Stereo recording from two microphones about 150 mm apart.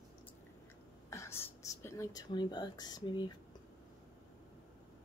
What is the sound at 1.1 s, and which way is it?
Speech, 20° left (ahead or behind).